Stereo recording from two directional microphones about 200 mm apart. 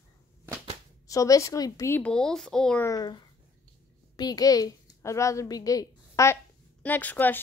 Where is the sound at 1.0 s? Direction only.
15° left (ahead or behind).